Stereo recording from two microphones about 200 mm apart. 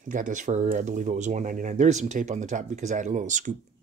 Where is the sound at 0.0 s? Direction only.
40° right (ahead or behind).